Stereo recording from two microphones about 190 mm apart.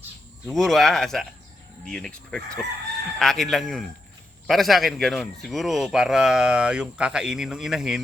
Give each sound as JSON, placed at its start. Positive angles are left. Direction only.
{"t": 0.4, "sound": "speech", "side_deg": 0}